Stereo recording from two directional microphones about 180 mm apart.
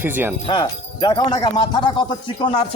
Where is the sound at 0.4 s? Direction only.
25° left (ahead or behind).